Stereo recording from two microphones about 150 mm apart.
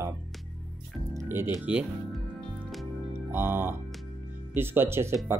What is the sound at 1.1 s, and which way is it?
Music, 15° right (ahead or behind).